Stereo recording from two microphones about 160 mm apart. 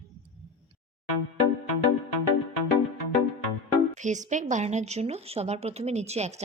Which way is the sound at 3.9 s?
50° right (ahead or behind).